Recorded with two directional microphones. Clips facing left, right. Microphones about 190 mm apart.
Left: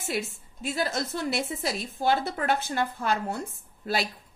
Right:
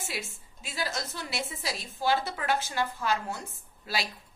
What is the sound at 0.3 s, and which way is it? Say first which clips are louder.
Speech: left 12 dB; centre (ahead or behind).